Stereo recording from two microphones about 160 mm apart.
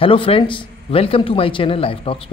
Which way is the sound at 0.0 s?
35° left (ahead or behind).